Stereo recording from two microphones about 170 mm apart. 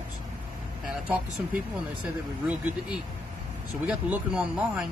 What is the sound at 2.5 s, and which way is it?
Speech, 10° right (ahead or behind).